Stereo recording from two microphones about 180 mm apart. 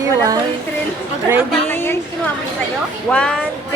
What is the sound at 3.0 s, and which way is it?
Speech, 5° left (ahead or behind).